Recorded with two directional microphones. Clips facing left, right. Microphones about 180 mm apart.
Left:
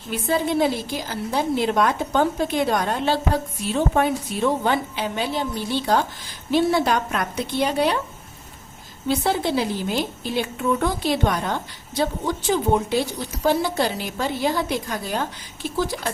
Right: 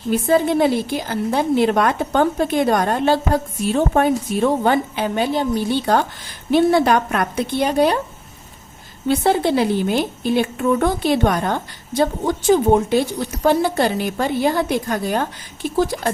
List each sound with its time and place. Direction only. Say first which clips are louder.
0.1 s a woman's voice: right 6 dB; 50° right (ahead or behind)
9.0 s a woman's voice: right 5 dB; 55° right (ahead or behind)